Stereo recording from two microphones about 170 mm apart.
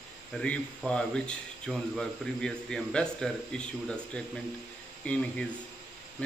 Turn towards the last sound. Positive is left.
turn(degrees=5)  # may be behind; listen again after turning